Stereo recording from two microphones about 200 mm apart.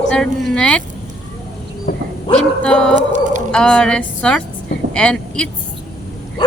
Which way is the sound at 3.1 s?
40° right (ahead or behind).